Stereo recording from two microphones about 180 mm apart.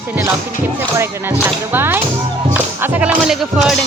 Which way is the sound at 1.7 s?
10° right (ahead or behind).